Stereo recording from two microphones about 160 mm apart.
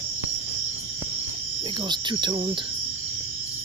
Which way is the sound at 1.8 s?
30° right (ahead or behind).